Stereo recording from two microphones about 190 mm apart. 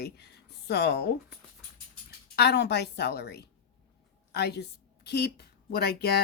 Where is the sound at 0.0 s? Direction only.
60° left (ahead or behind).